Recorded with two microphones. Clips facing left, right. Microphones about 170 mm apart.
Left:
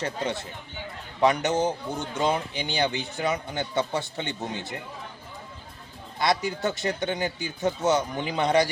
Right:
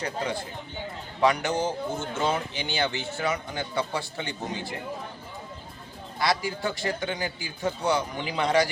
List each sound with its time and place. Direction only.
1.2 s speech: 20° left (ahead or behind)
6.1 s speech: 20° left (ahead or behind)